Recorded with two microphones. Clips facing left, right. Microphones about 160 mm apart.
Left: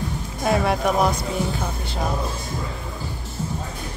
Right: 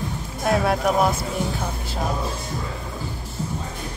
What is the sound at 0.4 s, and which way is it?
Speech, centre (ahead or behind).